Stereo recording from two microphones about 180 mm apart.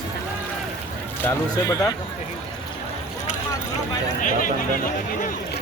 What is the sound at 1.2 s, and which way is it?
Speech, 20° left (ahead or behind).